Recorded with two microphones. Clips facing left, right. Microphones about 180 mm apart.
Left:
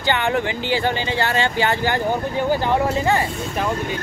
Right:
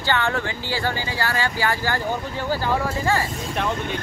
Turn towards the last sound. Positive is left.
turn(degrees=20)  # may be behind; listen again after turning